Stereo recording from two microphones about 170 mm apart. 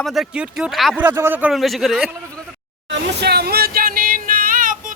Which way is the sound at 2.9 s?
70° right (ahead or behind).